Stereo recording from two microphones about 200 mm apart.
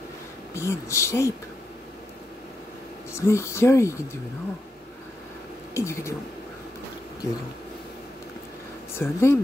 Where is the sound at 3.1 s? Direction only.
15° left (ahead or behind).